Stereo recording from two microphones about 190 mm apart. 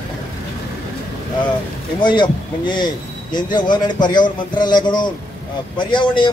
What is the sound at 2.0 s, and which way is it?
Speech, 25° left (ahead or behind).